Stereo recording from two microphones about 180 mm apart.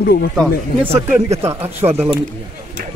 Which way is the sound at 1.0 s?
15° right (ahead or behind).